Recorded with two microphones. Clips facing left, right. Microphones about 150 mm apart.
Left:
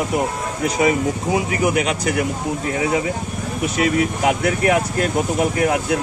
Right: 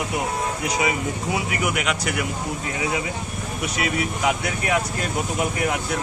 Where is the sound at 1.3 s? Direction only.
35° left (ahead or behind).